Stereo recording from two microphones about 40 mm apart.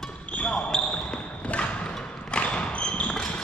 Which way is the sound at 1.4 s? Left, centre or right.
Left.